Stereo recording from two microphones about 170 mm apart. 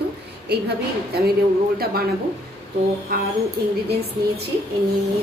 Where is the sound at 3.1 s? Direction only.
65° right (ahead or behind).